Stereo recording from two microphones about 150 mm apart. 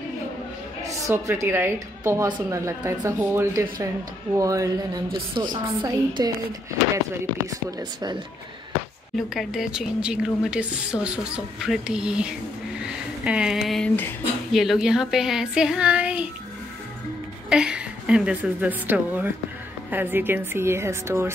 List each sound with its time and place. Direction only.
0.8 s a woman's voice: 20° right (ahead or behind)
9.1 s speech: centre (ahead or behind)
14.5 s speech: centre (ahead or behind)
17.5 s a woman's voice: 5° right (ahead or behind)